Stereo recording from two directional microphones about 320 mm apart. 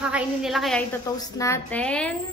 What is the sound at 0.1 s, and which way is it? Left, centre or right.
A woman's voice, centre.